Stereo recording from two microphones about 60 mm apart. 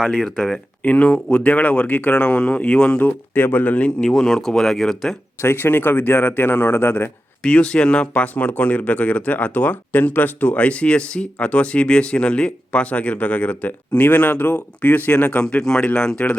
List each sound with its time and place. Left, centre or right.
0.0 s speech: centre
0.8 s speech: left
3.0 s speech: left
4.0 s speech: centre
5.4 s a man's voice: left
7.4 s speech: centre